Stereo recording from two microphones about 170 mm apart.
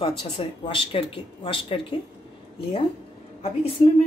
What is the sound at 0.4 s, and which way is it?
A woman's voice, 30° left (ahead or behind).